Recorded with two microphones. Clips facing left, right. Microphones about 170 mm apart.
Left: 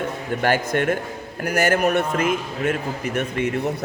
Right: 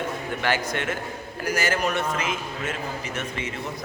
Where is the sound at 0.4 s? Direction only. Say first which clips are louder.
Left 7 dB; 50° left (ahead or behind).